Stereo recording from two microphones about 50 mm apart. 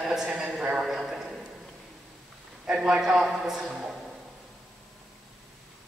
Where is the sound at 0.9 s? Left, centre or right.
Centre.